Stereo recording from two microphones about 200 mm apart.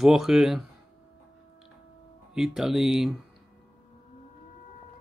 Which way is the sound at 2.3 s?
Centre (ahead or behind).